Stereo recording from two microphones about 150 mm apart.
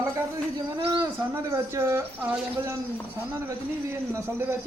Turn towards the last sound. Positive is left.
turn(degrees=-15)  # may be behind; listen again after turning